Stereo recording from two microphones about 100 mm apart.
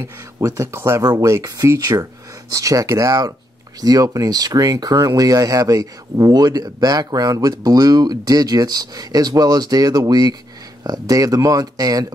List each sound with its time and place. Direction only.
0.0 s speech: 30° right (ahead or behind)
1.0 s speech: 40° right (ahead or behind)